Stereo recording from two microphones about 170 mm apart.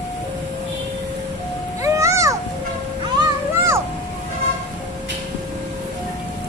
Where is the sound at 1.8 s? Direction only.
20° right (ahead or behind).